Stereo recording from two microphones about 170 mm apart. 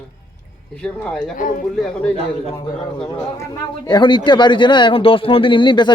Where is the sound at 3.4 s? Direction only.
25° left (ahead or behind).